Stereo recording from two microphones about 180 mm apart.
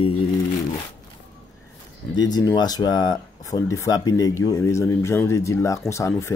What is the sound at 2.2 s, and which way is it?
Speech, 20° left (ahead or behind).